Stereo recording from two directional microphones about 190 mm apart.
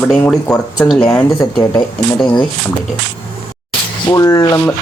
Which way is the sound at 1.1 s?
15° left (ahead or behind).